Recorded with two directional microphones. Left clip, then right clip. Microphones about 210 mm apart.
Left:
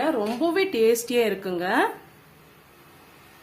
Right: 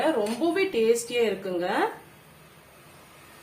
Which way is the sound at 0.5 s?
50° left (ahead or behind).